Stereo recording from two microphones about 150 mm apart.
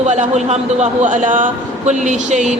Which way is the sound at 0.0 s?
50° right (ahead or behind).